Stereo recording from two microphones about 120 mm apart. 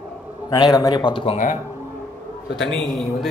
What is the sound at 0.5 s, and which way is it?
Speech, 30° left (ahead or behind).